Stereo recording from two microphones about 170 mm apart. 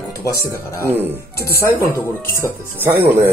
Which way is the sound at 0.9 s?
10° right (ahead or behind).